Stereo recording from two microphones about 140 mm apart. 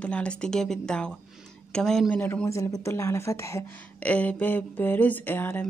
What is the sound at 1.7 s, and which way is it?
A woman's voice, 5° left (ahead or behind).